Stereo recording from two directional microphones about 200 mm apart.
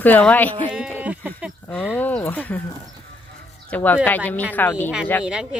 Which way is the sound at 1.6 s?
5° left (ahead or behind).